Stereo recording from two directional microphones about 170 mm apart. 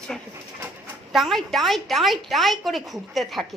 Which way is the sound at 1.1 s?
Centre (ahead or behind).